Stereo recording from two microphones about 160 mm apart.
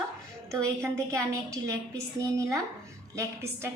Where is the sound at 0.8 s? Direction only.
20° right (ahead or behind).